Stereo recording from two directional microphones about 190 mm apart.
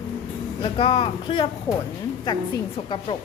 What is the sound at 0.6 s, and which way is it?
Speech, 25° left (ahead or behind).